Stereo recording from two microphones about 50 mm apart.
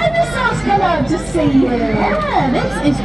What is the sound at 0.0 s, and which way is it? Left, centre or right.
A child's voice, centre.